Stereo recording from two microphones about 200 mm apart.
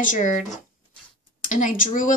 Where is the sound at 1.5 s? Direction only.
40° left (ahead or behind).